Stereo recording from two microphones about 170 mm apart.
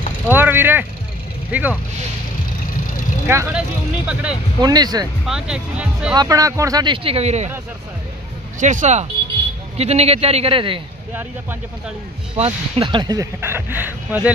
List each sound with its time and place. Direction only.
0.3 s speech: 10° right (ahead or behind)
3.3 s speech: 15° right (ahead or behind)
4.6 s speech: 25° right (ahead or behind)
5.2 s speech: 5° right (ahead or behind)
6.1 s speech: 20° right (ahead or behind); by 7.5 s 40° right (ahead or behind)
8.5 s a man's voice: 45° right (ahead or behind); by 10.8 s 30° right (ahead or behind)
12.4 s speech: 35° right (ahead or behind); by 14.3 s 10° right (ahead or behind)